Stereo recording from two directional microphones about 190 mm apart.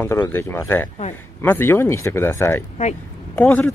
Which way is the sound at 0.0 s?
10° left (ahead or behind).